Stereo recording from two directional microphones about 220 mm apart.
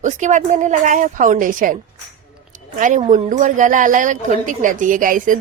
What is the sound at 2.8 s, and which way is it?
Speech, 35° right (ahead or behind).